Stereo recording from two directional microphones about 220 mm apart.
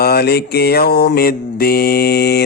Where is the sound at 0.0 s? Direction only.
45° left (ahead or behind).